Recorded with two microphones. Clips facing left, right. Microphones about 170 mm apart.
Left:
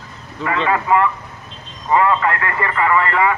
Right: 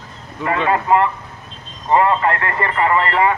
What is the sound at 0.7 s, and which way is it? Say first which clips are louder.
A man's voice: right 1 dB; 30° right (ahead or behind).